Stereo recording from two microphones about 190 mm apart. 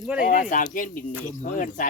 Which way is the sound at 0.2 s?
45° left (ahead or behind).